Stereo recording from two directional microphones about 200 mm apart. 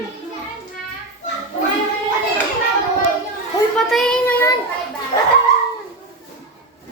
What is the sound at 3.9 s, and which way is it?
Child singing, centre (ahead or behind).